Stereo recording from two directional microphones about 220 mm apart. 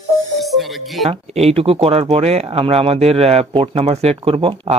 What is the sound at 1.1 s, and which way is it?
Speech, 30° right (ahead or behind).